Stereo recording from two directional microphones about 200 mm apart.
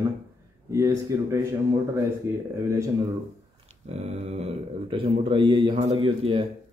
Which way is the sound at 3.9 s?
30° right (ahead or behind).